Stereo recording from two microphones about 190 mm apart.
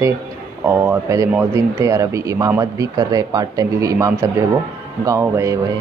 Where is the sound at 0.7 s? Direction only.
15° right (ahead or behind).